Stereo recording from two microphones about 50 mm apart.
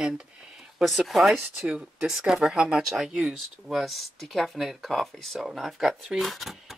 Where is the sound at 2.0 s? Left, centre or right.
Centre.